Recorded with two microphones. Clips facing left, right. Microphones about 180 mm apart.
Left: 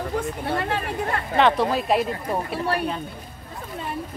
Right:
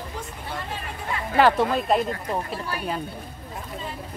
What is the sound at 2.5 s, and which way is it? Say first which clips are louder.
Speech: left 6 dB; 65° left (ahead or behind).